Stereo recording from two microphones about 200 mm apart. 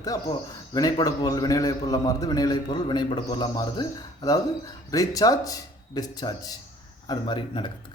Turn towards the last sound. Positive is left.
turn(degrees=25)  # may be behind; listen again after turning